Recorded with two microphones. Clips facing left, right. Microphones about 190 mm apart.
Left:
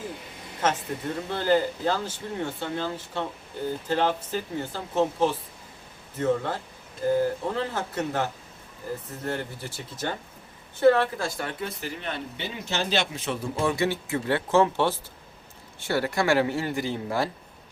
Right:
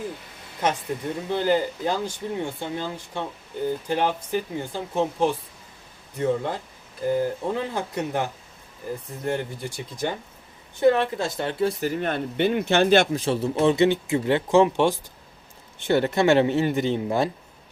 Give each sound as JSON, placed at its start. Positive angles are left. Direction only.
{"t": 0.6, "sound": "speech", "side_deg": -15}
{"t": 11.8, "sound": "speech", "side_deg": -45}
{"t": 13.1, "sound": "speech", "side_deg": -30}